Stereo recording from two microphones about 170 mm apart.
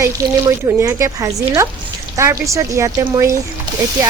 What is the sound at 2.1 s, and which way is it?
Speech, 15° right (ahead or behind).